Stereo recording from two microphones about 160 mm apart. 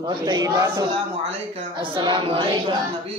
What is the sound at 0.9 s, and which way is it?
A woman's voice, 35° right (ahead or behind).